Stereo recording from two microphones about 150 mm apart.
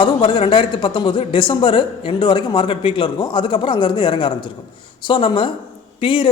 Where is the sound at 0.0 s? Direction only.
40° left (ahead or behind).